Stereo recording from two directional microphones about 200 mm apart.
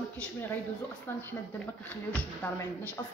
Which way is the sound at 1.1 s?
10° left (ahead or behind).